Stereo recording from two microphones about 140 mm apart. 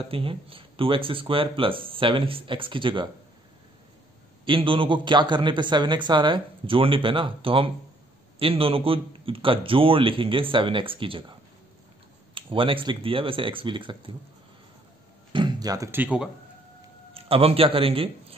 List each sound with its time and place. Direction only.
0.1 s a man's voice: 40° right (ahead or behind)
4.5 s a man's voice: 35° right (ahead or behind)
12.4 s a man's voice: 40° right (ahead or behind)
15.3 s a sound: 30° right (ahead or behind)
15.9 s a man's voice: 10° right (ahead or behind)
17.1 s a man's voice: 45° right (ahead or behind)